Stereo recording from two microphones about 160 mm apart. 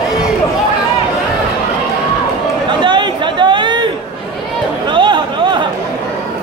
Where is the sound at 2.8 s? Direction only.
30° right (ahead or behind).